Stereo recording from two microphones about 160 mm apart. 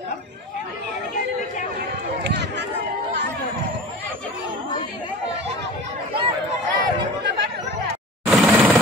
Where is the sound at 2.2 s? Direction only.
90° right.